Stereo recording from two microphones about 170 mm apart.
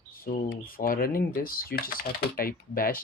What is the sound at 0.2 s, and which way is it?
Speech, 55° left (ahead or behind).